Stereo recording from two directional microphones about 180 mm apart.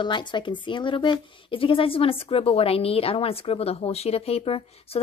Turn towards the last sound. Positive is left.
turn(degrees=30)  # may be behind; listen again after turning